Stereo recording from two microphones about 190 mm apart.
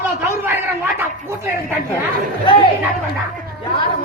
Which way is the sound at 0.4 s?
10° right (ahead or behind).